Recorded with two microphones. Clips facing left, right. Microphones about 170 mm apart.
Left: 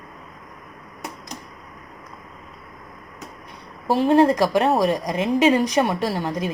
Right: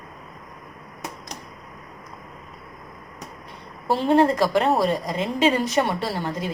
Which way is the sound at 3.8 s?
15° left (ahead or behind).